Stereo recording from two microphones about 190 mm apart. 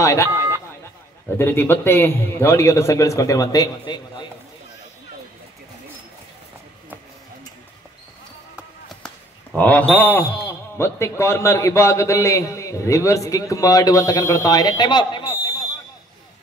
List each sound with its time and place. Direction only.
0.0 s speech: 15° left (ahead or behind)
1.4 s a man's voice: 10° left (ahead or behind)
8.5 s a sound: 5° right (ahead or behind)
9.6 s a man's voice: 10° left (ahead or behind); by 15.3 s 25° left (ahead or behind)